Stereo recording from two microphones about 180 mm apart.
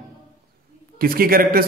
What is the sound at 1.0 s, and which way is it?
Speech, 55° right (ahead or behind).